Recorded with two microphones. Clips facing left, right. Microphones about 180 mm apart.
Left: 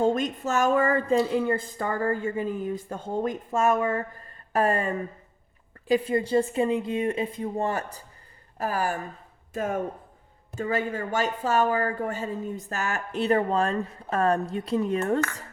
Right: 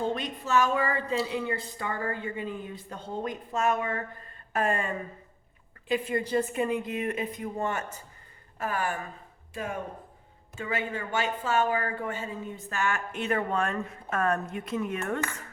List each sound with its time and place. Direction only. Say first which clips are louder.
0.0 s a woman's voice: left 7 dB; 45° left (ahead or behind)